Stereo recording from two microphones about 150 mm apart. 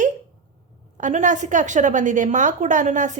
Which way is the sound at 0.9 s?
55° right (ahead or behind).